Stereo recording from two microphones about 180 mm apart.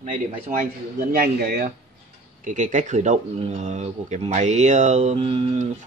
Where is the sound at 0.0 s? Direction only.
45° right (ahead or behind).